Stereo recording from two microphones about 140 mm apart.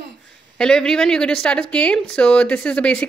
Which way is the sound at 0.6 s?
5° left (ahead or behind).